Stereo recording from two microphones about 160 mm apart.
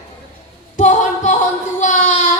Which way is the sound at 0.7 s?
50° left (ahead or behind).